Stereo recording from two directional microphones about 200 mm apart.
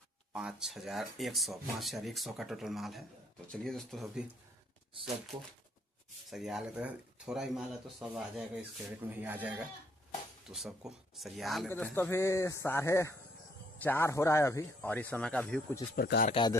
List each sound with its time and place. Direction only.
0.3 s speech: 5° right (ahead or behind)
5.3 s speech: 25° right (ahead or behind)
6.3 s speech: centre (ahead or behind)
11.7 s speech: 10° left (ahead or behind)
16.0 s speech: 50° left (ahead or behind)
16.3 s a man's voice: 25° left (ahead or behind)